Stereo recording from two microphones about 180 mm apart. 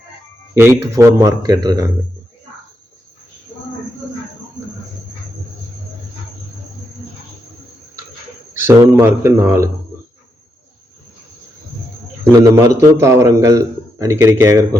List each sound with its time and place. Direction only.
0.5 s a man's voice: 15° right (ahead or behind)
8.6 s a man's voice: 15° right (ahead or behind)
12.4 s a man's voice: 15° right (ahead or behind)